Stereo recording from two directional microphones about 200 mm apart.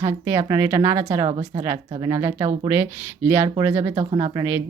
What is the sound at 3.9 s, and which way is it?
Speech, 25° right (ahead or behind).